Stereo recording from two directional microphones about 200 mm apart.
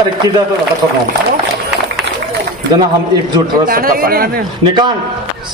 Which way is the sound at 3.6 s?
45° right (ahead or behind).